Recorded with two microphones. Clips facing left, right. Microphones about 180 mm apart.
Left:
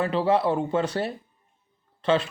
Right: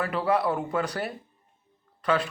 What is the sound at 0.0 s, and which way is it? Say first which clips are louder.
Speech: left 3 dB; 25° left (ahead or behind).